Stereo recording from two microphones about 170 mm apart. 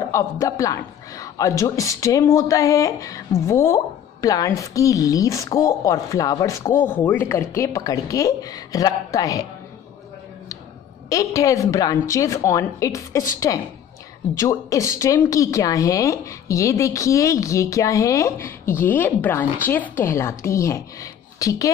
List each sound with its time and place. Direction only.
0.1 s a man's voice: 20° left (ahead or behind)
11.1 s a man's voice: 20° left (ahead or behind)